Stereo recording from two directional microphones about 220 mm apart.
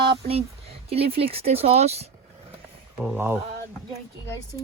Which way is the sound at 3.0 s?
10° right (ahead or behind).